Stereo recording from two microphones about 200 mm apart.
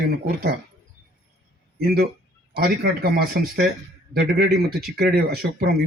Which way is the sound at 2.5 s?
50° right (ahead or behind).